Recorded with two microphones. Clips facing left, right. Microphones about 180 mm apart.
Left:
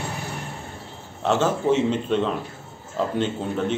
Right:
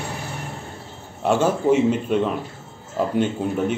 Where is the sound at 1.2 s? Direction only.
10° right (ahead or behind).